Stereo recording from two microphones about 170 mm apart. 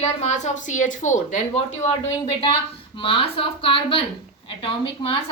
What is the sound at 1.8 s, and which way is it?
A woman's voice, 30° left (ahead or behind).